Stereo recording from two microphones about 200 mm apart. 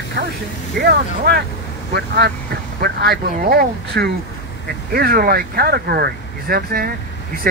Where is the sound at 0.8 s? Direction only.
55° right (ahead or behind).